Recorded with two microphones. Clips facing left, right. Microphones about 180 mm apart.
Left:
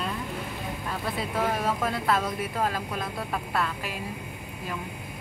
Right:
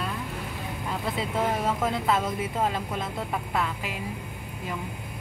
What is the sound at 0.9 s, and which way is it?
Speech, 20° right (ahead or behind).